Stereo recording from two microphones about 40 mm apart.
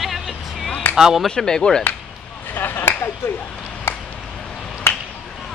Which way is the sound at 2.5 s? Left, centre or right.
Left.